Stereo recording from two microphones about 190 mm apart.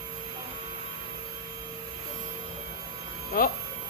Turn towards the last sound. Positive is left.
turn(degrees=50)  # may be behind; listen again after turning